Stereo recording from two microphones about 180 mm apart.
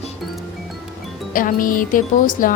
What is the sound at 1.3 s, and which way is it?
Music, 50° left (ahead or behind).